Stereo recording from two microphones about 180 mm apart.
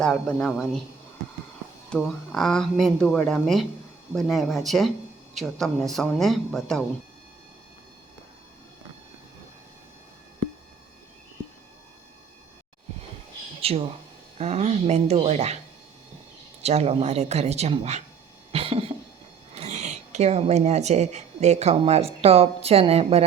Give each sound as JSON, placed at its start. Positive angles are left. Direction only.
{"t": 0.0, "sound": "speech", "side_deg": 5}
{"t": 1.9, "sound": "speech", "side_deg": 5}
{"t": 13.6, "sound": "a sound", "side_deg": -35}
{"t": 14.3, "sound": "speech", "side_deg": -35}
{"t": 16.6, "sound": "speech", "side_deg": -35}
{"t": 18.5, "sound": "a sound", "side_deg": -30}
{"t": 19.5, "sound": "speech", "side_deg": -40}